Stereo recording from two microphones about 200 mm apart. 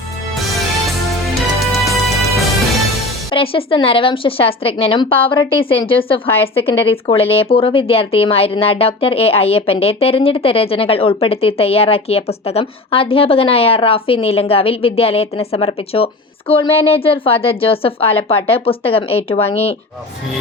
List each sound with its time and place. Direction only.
1.5 s music: centre (ahead or behind)
3.3 s speech: 25° left (ahead or behind)
6.2 s a woman's voice: 10° left (ahead or behind)
6.9 s speech: 30° left (ahead or behind)